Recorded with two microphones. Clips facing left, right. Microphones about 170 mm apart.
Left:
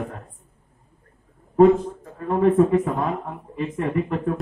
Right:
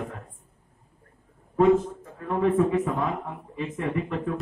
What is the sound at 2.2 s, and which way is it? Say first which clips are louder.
Speech: left 5 dB; 50° left (ahead or behind).